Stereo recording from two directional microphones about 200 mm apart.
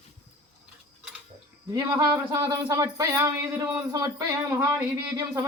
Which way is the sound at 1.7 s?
15° right (ahead or behind).